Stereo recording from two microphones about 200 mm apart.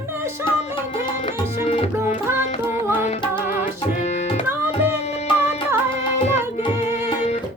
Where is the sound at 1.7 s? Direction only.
30° left (ahead or behind).